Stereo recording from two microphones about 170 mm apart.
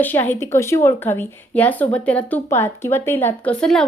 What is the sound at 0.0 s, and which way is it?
A woman's voice, 10° left (ahead or behind).